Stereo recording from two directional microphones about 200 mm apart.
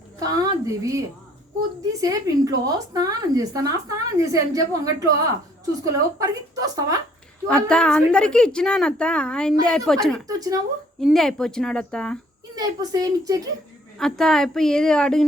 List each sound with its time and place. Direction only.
0.2 s a woman's voice: 20° right (ahead or behind)
7.5 s a woman's voice: 5° left (ahead or behind)
10.2 s speech: 20° right (ahead or behind)
11.0 s a woman's voice: centre (ahead or behind)
12.5 s a woman's voice: 20° right (ahead or behind)
14.0 s a woman's voice: centre (ahead or behind)